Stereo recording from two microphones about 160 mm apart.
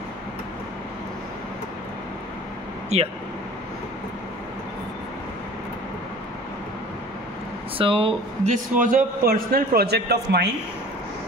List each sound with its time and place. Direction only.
2.9 s speech: 45° right (ahead or behind)
7.7 s speech: 35° right (ahead or behind)
8.7 s a man's voice: 60° right (ahead or behind); by 10.5 s 90° right